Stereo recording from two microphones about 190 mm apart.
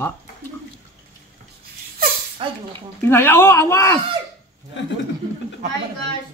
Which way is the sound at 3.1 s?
10° left (ahead or behind).